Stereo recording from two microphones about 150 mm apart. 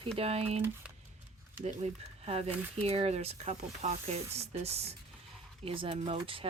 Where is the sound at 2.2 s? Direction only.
45° right (ahead or behind).